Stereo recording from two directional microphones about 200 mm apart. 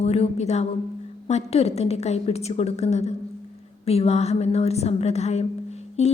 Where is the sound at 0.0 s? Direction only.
35° left (ahead or behind).